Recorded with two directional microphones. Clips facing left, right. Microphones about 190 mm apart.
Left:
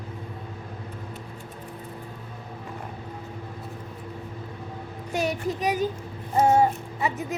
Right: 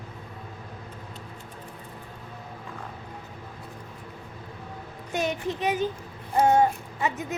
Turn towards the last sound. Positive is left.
turn(degrees=10)  # may be behind; listen again after turning